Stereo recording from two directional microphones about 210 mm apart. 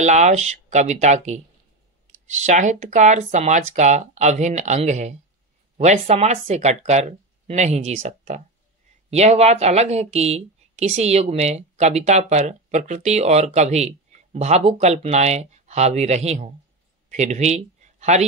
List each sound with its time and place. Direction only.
0.0 s speech: 35° right (ahead or behind)
2.4 s speech: 35° right (ahead or behind)